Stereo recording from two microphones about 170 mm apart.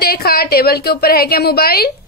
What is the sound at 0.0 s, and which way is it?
A woman's voice, 65° left (ahead or behind).